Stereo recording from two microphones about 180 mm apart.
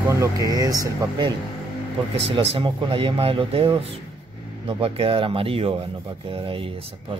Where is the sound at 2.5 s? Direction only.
30° right (ahead or behind).